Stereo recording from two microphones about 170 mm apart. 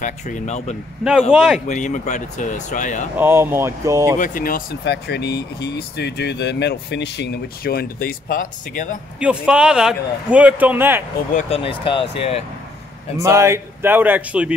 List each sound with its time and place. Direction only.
0.0 s speech: 45° left (ahead or behind)
1.3 s speech: 5° right (ahead or behind)
1.7 s speech: 45° left (ahead or behind)
3.2 s a man's voice: 10° right (ahead or behind)
4.2 s speech: 55° left (ahead or behind)
9.2 s a man's voice: 5° right (ahead or behind)
11.3 s speech: 35° left (ahead or behind)
13.2 s a man's voice: 15° right (ahead or behind)